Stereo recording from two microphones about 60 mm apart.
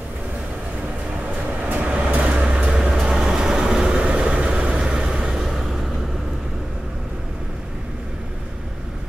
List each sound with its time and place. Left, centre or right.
1.6 s vehicle: right
2.7 s vehicle: centre